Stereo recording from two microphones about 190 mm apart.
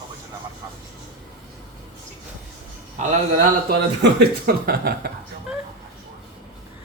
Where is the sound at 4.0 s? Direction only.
55° right (ahead or behind).